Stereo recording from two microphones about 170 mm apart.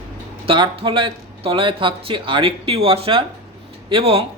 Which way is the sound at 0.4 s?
30° right (ahead or behind).